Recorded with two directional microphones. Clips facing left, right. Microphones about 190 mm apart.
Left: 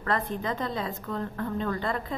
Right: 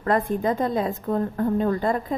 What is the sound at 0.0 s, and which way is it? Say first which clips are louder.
A woman's voice: right 7 dB; 50° right (ahead or behind).